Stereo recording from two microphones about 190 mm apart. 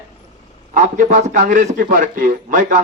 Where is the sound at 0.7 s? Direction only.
40° right (ahead or behind).